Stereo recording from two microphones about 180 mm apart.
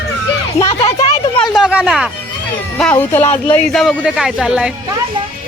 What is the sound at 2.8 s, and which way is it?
Speech, 10° left (ahead or behind).